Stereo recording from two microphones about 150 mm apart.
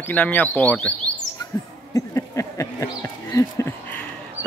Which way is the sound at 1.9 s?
20° left (ahead or behind).